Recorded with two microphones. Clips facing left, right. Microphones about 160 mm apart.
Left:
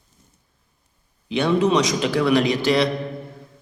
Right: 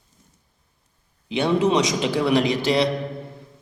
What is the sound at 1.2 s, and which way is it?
A man's voice, 25° right (ahead or behind).